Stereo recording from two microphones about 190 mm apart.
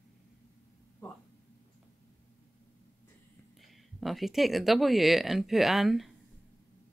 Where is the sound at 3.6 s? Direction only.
Centre (ahead or behind).